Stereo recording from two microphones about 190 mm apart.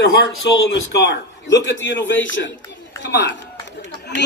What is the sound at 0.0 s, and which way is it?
A man's voice, 60° left (ahead or behind).